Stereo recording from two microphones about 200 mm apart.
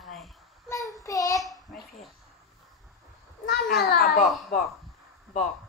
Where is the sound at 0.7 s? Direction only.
15° left (ahead or behind).